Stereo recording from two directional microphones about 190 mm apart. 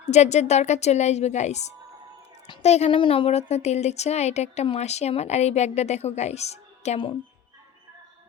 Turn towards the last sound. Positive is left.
turn(degrees=30)  # may be behind; listen again after turning